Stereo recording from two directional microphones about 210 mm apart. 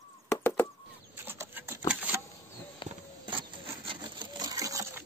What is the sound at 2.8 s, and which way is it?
Sewing machine, 20° right (ahead or behind).